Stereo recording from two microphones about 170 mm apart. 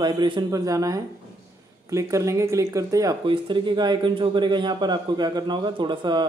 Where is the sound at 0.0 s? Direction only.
25° right (ahead or behind).